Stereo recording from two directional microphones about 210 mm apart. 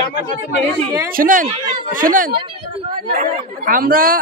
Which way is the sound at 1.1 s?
40° right (ahead or behind).